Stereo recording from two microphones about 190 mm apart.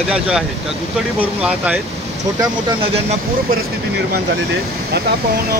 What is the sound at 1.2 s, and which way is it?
Speech, 10° right (ahead or behind).